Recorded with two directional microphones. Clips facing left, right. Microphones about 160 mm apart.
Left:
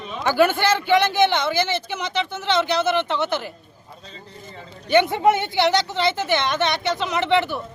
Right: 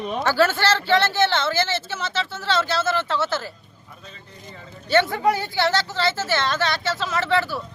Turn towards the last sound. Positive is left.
turn(degrees=20)  # may be behind; listen again after turning